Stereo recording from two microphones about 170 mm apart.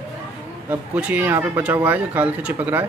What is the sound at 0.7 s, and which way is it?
A man's voice, 10° right (ahead or behind).